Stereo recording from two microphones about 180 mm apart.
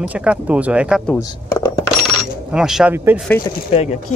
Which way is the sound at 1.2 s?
15° left (ahead or behind).